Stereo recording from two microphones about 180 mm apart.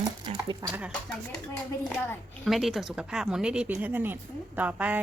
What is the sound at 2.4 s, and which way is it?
Speech, centre (ahead or behind).